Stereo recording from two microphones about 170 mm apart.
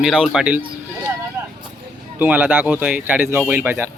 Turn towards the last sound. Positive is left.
turn(degrees=-15)  # may be behind; listen again after turning